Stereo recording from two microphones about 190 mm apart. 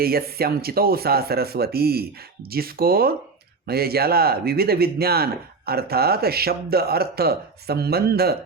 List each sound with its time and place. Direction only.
0.0 s a man's voice: 55° right (ahead or behind)